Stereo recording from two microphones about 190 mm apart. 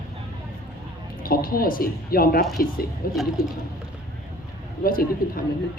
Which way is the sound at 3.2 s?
Centre (ahead or behind).